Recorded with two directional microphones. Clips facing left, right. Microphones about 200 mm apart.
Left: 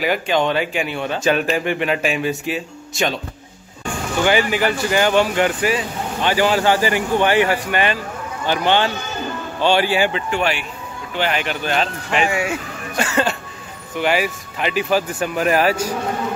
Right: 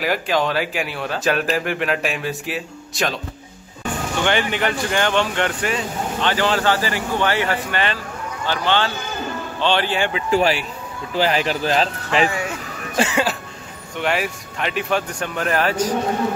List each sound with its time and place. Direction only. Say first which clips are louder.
0.0 s speech: left 2 dB; centre (ahead or behind)
4.2 s speech: left 4 dB; 5° left (ahead or behind)
10.3 s speech: right 3 dB; 35° right (ahead or behind)
12.3 s speech: left 4 dB; 10° left (ahead or behind)
13.1 s speech: left 1 dB; 5° right (ahead or behind)